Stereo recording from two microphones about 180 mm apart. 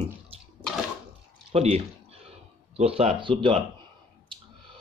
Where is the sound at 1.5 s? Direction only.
35° right (ahead or behind).